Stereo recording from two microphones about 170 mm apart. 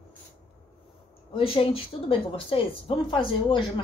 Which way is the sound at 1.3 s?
35° left (ahead or behind).